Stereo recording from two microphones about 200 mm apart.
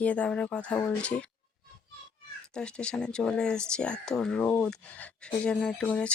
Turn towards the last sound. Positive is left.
turn(degrees=5)  # may be behind; listen again after turning